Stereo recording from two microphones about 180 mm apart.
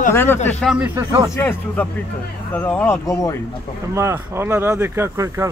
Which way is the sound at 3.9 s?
15° right (ahead or behind).